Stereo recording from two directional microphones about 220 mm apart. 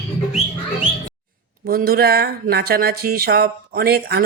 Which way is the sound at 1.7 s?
40° right (ahead or behind).